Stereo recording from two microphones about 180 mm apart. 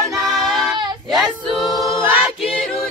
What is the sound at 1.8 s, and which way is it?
A capella, 15° right (ahead or behind).